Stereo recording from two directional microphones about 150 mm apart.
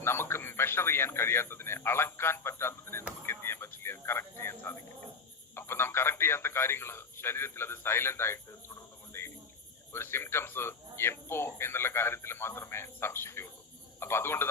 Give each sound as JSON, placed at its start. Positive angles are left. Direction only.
{"t": 0.0, "sound": "speech", "side_deg": 15}
{"t": 9.1, "sound": "cricket", "side_deg": 15}
{"t": 9.9, "sound": "speech", "side_deg": 15}